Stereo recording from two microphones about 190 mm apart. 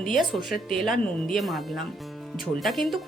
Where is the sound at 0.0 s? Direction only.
Centre (ahead or behind).